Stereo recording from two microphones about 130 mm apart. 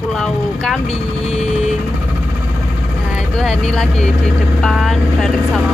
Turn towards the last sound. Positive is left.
turn(degrees=0)  # may be behind; listen again after turning